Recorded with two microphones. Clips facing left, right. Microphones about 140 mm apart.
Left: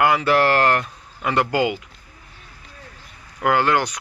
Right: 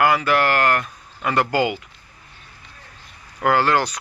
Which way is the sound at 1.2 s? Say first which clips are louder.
Even; 15° left (ahead or behind).